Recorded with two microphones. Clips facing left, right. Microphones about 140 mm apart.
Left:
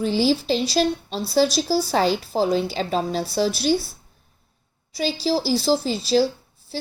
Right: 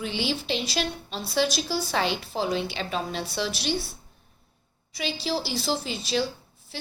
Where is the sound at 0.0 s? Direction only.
35° left (ahead or behind).